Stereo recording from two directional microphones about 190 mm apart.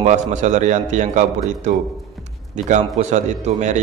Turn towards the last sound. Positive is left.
turn(degrees=-40)  # may be behind; listen again after turning